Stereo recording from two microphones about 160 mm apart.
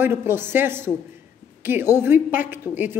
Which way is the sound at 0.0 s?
15° right (ahead or behind).